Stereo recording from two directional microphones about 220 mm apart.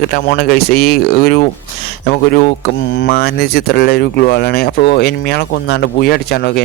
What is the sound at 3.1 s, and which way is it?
Speech, 40° left (ahead or behind).